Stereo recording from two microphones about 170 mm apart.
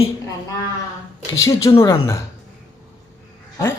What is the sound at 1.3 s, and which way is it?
Speech, 20° left (ahead or behind).